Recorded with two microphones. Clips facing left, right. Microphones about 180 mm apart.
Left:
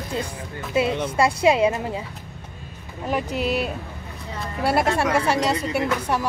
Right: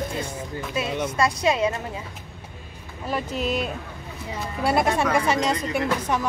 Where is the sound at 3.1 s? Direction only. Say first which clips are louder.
Left 2 dB; 10° left (ahead or behind).